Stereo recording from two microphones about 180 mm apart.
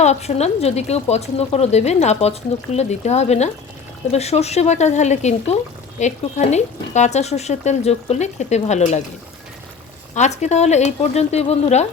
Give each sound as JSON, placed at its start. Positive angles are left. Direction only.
{"t": 0.0, "sound": "speech", "side_deg": 35}
{"t": 10.2, "sound": "speech", "side_deg": 40}